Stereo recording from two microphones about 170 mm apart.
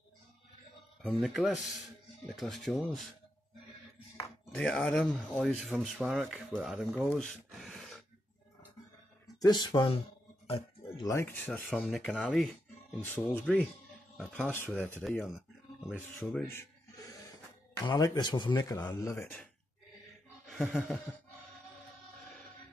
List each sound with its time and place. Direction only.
1.0 s speech: 5° right (ahead or behind)
4.6 s speech: 5° left (ahead or behind)
7.1 s a sound: 5° left (ahead or behind)
9.4 s speech: 25° left (ahead or behind)
10.4 s a sound: 30° left (ahead or behind)
11.1 s speech: 15° left (ahead or behind)
16.4 s rub: 15° left (ahead or behind)
17.8 s speech: 25° left (ahead or behind)
20.4 s music: centre (ahead or behind)